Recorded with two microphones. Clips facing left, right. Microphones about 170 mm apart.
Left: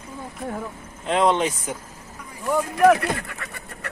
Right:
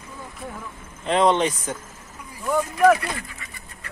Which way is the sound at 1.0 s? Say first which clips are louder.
Right 1 dB; centre (ahead or behind).